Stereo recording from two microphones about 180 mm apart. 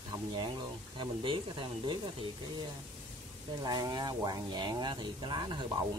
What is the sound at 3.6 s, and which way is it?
Speech, 20° right (ahead or behind).